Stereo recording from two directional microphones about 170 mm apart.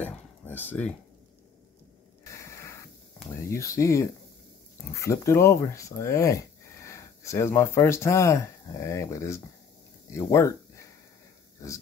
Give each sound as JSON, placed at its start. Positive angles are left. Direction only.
{"t": 0.0, "sound": "speech", "side_deg": 10}
{"t": 2.3, "sound": "spray", "side_deg": 15}
{"t": 3.4, "sound": "speech", "side_deg": 15}